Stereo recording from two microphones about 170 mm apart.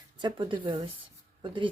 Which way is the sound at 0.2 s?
30° right (ahead or behind).